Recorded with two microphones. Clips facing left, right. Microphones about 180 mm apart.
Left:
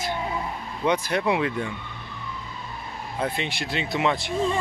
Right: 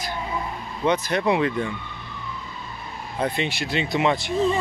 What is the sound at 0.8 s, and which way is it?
Speech, 10° left (ahead or behind).